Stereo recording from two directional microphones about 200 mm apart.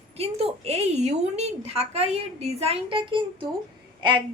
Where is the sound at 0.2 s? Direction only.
30° right (ahead or behind).